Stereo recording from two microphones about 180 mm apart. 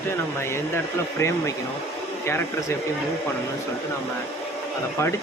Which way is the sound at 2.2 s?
15° left (ahead or behind).